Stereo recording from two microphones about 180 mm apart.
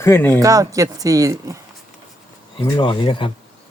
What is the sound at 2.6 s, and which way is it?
Speech, 30° left (ahead or behind).